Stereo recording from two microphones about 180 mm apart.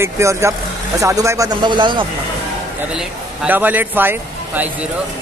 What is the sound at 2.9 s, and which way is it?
A man's voice, 10° right (ahead or behind).